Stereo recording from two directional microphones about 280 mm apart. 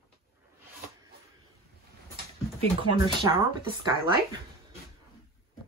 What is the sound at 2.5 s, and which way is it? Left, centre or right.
Speech, centre.